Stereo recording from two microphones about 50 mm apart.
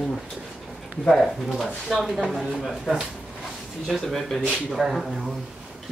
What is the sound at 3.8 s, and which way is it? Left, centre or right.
Speech, centre.